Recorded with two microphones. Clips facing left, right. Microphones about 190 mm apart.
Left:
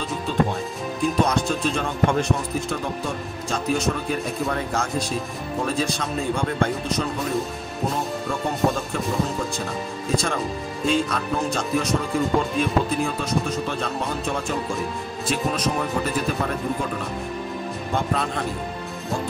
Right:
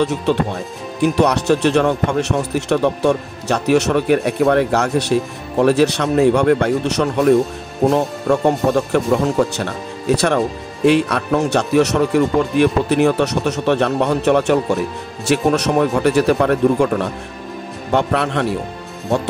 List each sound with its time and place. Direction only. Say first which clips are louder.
0.0 s speech: right 7 dB; 75° right (ahead or behind)